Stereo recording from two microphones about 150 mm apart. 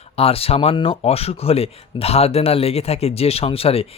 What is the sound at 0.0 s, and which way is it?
Speech, 40° left (ahead or behind).